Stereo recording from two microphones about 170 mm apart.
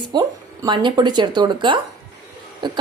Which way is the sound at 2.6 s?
25° right (ahead or behind).